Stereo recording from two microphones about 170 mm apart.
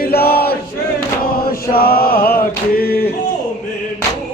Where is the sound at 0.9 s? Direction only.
60° left (ahead or behind).